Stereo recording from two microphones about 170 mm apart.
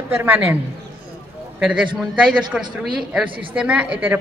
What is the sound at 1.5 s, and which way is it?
A man's voice, 5° right (ahead or behind).